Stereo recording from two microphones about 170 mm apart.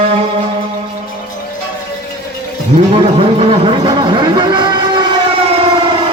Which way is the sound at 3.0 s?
35° right (ahead or behind).